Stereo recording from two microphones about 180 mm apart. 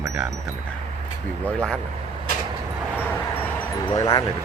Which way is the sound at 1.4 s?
5° left (ahead or behind).